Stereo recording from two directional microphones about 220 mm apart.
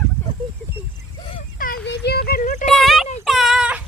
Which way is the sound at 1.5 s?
40° left (ahead or behind).